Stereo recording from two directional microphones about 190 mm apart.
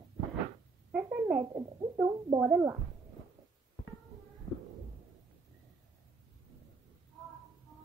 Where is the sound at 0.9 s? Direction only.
5° right (ahead or behind).